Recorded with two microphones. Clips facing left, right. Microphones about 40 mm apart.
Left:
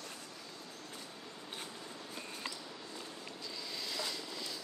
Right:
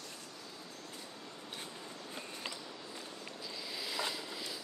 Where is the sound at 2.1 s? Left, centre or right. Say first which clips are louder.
Even; centre.